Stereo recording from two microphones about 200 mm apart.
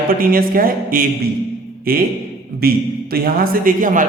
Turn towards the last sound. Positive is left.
turn(degrees=-40)  # may be behind; listen again after turning